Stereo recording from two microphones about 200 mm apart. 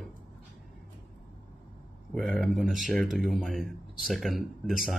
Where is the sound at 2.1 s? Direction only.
Centre (ahead or behind).